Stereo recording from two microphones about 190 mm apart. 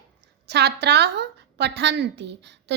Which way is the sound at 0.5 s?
60° right (ahead or behind).